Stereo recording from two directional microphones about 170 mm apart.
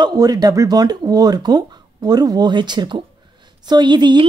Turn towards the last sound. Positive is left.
turn(degrees=-25)  # may be behind; listen again after turning